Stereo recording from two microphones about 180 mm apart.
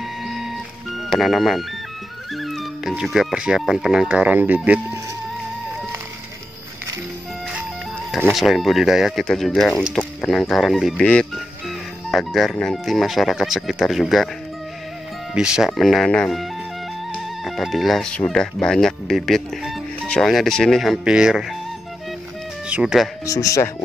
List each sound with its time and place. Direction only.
0.2 s music: 5° right (ahead or behind)
1.1 s speech: centre (ahead or behind)
8.3 s speech: centre (ahead or behind)
15.3 s speech: 5° right (ahead or behind)
22.7 s speech: 5° right (ahead or behind)
23.2 s speech: 20° left (ahead or behind)